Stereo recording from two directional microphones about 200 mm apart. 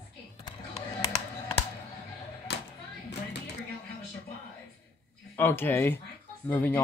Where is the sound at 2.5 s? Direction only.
60° left (ahead or behind).